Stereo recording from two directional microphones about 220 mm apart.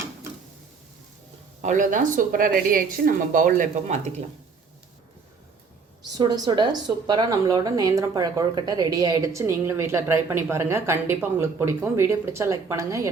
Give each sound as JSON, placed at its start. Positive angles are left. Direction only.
{"t": 1.6, "sound": "a woman's voice", "side_deg": -35}
{"t": 6.1, "sound": "a woman's voice", "side_deg": -20}